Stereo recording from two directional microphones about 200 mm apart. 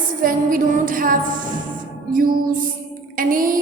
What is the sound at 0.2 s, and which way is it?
Speech, 45° right (ahead or behind).